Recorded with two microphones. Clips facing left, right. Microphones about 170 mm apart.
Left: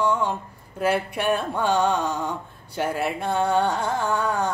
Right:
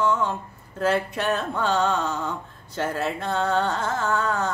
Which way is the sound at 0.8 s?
10° left (ahead or behind).